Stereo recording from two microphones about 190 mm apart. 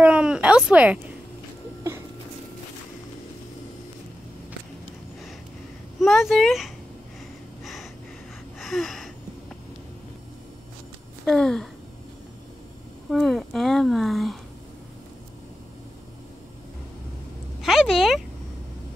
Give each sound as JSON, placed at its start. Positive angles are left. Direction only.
{"t": 0.0, "sound": "a sound", "side_deg": -5}
{"t": 5.9, "sound": "speech", "side_deg": 0}
{"t": 7.6, "sound": "gasp", "side_deg": 0}
{"t": 11.2, "sound": "speech", "side_deg": 0}
{"t": 13.1, "sound": "speech", "side_deg": 0}
{"t": 17.6, "sound": "speech", "side_deg": 0}